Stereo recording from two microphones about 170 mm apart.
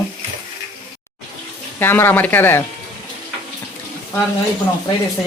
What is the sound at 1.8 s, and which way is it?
Speech, 10° left (ahead or behind).